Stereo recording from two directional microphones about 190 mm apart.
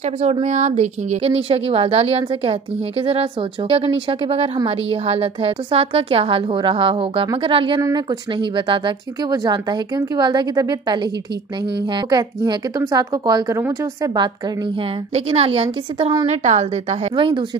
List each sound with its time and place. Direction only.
0.2 s speech: 35° right (ahead or behind)
15.1 s speech: 30° right (ahead or behind)